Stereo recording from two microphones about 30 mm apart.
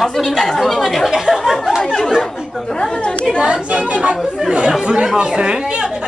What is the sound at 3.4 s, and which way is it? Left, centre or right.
Speech, right.